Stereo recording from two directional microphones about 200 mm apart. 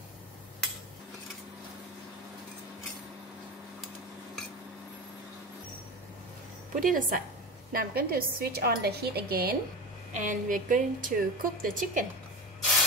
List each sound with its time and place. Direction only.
6.7 s a woman's voice: 45° right (ahead or behind)